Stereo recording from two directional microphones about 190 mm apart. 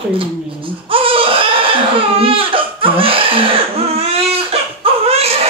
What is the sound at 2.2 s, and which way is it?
Laughter, 30° right (ahead or behind).